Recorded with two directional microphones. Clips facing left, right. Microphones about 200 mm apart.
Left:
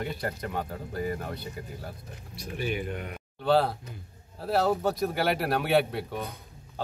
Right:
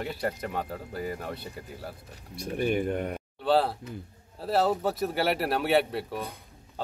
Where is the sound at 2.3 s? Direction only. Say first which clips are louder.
Right 5 dB; 50° right (ahead or behind).